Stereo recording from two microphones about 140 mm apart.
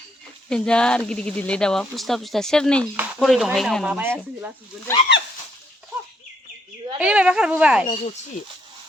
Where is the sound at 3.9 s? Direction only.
10° right (ahead or behind).